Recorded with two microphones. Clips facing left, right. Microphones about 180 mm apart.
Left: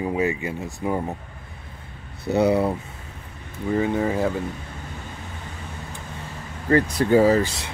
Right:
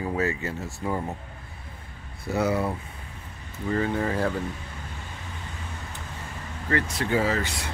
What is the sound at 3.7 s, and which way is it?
Speech, 10° left (ahead or behind).